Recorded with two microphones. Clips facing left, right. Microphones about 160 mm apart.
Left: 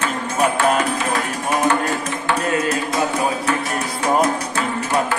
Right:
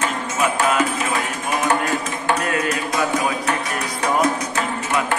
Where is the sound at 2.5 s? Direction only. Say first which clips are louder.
Left 2 dB; 30° left (ahead or behind).